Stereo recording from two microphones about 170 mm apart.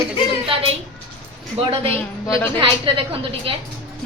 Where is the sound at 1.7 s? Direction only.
35° right (ahead or behind).